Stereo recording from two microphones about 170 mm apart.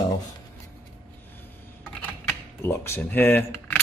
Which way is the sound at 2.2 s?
15° left (ahead or behind).